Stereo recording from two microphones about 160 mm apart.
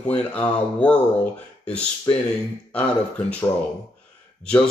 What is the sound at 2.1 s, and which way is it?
Speech, 25° left (ahead or behind).